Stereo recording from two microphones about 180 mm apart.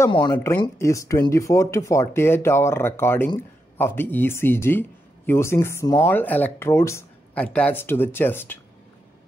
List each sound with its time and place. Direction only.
0.1 s speech: 25° left (ahead or behind)